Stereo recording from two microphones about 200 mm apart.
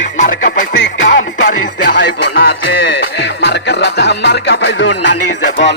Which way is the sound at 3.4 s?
60° left (ahead or behind).